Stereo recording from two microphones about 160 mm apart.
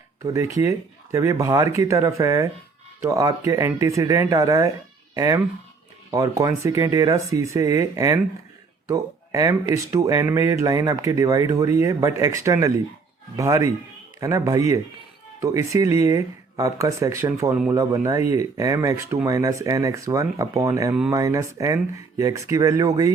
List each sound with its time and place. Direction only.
0.3 s speech: 20° right (ahead or behind)